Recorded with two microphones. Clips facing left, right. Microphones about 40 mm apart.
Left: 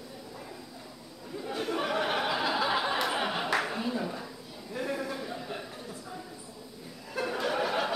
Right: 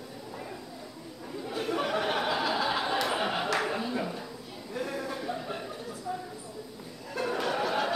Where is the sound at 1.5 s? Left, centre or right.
Centre.